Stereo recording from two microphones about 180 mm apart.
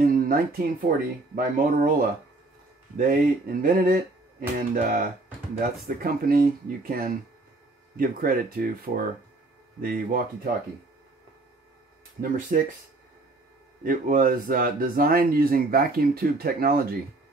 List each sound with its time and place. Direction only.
0.0 s speech: 55° right (ahead or behind)
3.6 s music: 50° right (ahead or behind)
5.6 s speech: 55° right (ahead or behind)
12.2 s speech: 50° right (ahead or behind)
13.8 s speech: 50° right (ahead or behind)